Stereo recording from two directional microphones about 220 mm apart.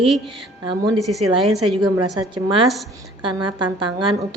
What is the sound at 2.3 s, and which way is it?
A woman's voice, 25° right (ahead or behind).